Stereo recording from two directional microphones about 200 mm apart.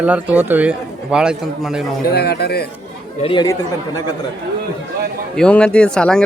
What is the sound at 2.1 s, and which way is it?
Speech, 55° left (ahead or behind).